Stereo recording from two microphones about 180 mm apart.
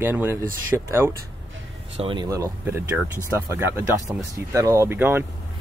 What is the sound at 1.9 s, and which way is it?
Speech, 30° right (ahead or behind).